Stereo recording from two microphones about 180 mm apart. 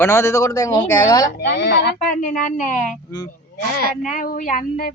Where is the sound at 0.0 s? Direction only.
15° left (ahead or behind).